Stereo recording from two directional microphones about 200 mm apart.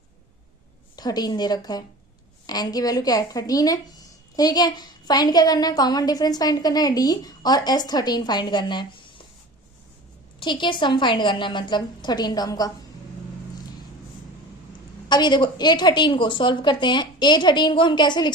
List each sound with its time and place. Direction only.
0.9 s a woman's voice: 20° left (ahead or behind)
10.4 s a woman's voice: 25° left (ahead or behind)
15.1 s a woman's voice: 20° left (ahead or behind)